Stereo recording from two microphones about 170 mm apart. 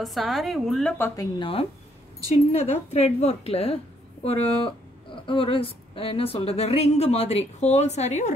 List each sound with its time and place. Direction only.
0.0 s a woman's voice: centre (ahead or behind)
0.9 s speech: 15° left (ahead or behind)
1.4 s a woman's voice: 35° left (ahead or behind)